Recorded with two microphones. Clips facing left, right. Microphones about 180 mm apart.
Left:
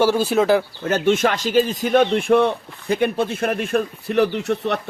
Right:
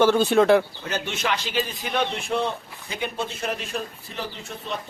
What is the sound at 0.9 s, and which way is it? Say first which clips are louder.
Speech: left 9 dB; 50° left (ahead or behind).